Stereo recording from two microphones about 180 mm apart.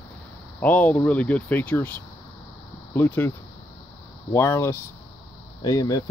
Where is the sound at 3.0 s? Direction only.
10° left (ahead or behind).